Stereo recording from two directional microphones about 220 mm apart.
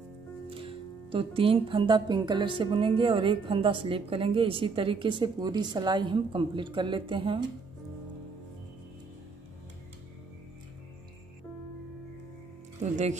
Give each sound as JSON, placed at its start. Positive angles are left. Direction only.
{"t": 0.6, "sound": "speech", "side_deg": -25}
{"t": 12.9, "sound": "speech", "side_deg": -30}